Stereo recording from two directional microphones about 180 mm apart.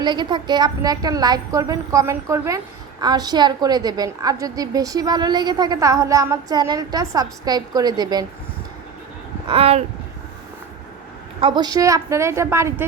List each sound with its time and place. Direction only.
0.0 s a woman's voice: 25° right (ahead or behind)
9.5 s speech: 35° right (ahead or behind)
11.3 s a woman's voice: 25° right (ahead or behind)